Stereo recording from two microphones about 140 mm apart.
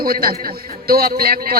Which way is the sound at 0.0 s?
90° right.